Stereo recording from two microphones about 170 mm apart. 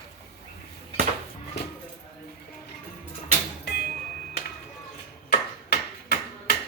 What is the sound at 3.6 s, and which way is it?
Music, 65° left (ahead or behind).